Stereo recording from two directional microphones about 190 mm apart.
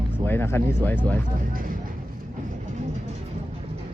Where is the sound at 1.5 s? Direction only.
50° right (ahead or behind).